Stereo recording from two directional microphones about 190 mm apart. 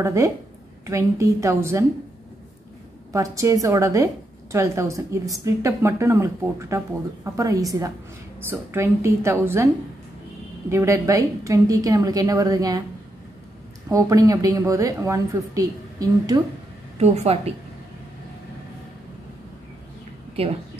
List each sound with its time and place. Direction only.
0.0 s a woman's voice: 15° right (ahead or behind)
3.1 s a woman's voice: 15° right (ahead or behind)
10.7 s a woman's voice: 15° right (ahead or behind)
13.8 s a woman's voice: 15° right (ahead or behind)
17.0 s a woman's voice: 35° right (ahead or behind)
20.4 s a woman's voice: 30° right (ahead or behind)